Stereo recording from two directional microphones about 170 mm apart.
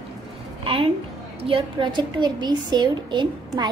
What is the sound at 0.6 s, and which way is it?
A woman's voice, 30° right (ahead or behind).